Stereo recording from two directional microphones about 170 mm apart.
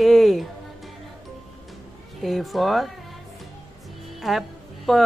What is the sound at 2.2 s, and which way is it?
Speech, centre (ahead or behind).